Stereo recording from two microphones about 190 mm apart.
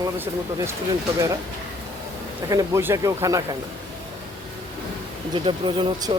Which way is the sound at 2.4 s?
15° right (ahead or behind).